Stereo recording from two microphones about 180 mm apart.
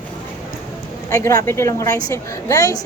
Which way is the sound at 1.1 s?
20° left (ahead or behind).